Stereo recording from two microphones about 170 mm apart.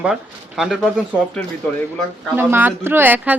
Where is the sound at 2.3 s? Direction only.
10° right (ahead or behind).